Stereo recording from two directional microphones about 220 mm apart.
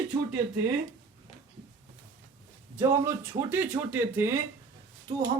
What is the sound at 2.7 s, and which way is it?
Speech, 10° right (ahead or behind).